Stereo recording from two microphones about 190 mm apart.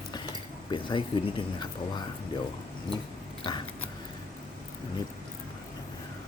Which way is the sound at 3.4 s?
25° left (ahead or behind).